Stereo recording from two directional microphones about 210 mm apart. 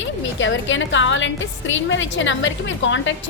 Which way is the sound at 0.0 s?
65° left (ahead or behind).